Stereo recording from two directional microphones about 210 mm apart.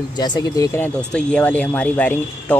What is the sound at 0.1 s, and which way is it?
Speech, 20° left (ahead or behind).